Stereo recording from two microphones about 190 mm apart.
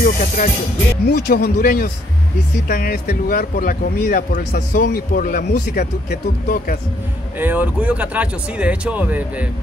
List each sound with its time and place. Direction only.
0.0 s music: 45° left (ahead or behind)
1.0 s speech: 55° left (ahead or behind)
7.3 s speech: 10° right (ahead or behind)